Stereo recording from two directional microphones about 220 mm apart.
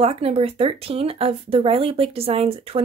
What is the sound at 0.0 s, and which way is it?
Speech, 25° right (ahead or behind).